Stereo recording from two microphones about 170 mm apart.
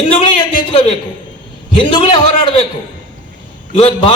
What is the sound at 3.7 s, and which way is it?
Speech, 35° left (ahead or behind).